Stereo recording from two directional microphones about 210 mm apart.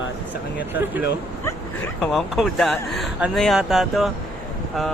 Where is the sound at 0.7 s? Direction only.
10° right (ahead or behind).